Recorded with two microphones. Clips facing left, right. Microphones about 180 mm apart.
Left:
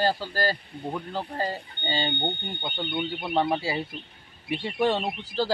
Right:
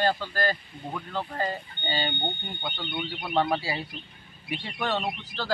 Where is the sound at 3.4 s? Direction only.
25° left (ahead or behind).